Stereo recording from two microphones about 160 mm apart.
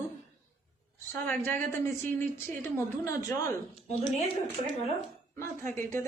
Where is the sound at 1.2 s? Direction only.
15° left (ahead or behind).